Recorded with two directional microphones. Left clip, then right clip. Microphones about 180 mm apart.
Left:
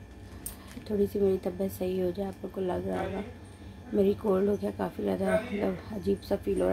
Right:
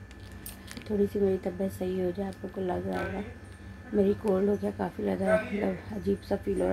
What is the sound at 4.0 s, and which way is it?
A woman's voice, 15° left (ahead or behind).